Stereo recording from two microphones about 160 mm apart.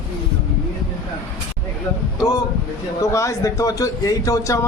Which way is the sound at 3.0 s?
20° left (ahead or behind).